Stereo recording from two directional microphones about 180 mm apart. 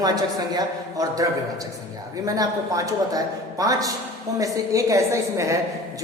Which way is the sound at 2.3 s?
20° right (ahead or behind).